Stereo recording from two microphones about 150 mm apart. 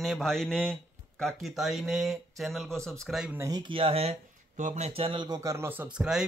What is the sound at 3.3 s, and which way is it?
Speech, 25° right (ahead or behind).